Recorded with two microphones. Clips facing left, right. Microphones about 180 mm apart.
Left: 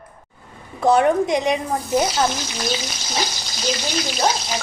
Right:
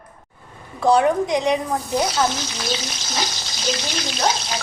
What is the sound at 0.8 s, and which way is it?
Speech, 20° left (ahead or behind).